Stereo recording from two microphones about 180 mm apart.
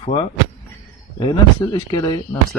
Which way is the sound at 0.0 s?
30° left (ahead or behind).